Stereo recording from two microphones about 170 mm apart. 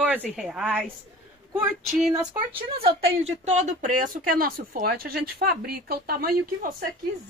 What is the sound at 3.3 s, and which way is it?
Speech, 45° right (ahead or behind).